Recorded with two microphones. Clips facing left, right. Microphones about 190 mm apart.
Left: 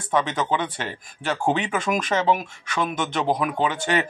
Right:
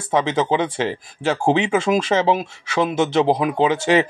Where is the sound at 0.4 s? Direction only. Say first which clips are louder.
Right 6 dB; 25° right (ahead or behind).